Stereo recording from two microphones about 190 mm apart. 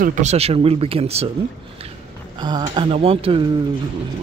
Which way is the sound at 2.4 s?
20° right (ahead or behind).